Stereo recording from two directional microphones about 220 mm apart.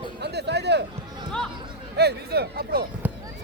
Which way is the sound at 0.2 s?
50° right (ahead or behind).